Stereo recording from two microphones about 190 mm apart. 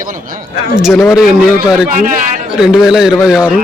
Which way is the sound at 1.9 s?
45° right (ahead or behind).